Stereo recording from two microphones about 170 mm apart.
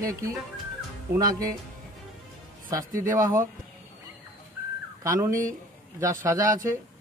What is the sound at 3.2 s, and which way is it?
Speech, 20° right (ahead or behind).